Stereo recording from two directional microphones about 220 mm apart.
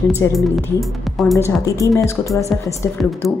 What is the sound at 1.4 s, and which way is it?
Speech, 15° left (ahead or behind).